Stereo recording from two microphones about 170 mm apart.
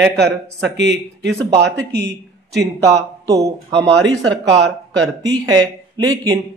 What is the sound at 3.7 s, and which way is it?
Speech, 90° right.